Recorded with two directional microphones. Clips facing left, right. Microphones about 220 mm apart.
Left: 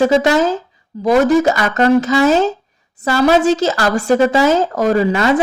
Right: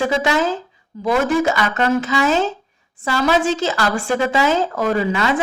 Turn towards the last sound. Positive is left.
turn(degrees=40)  # may be behind; listen again after turning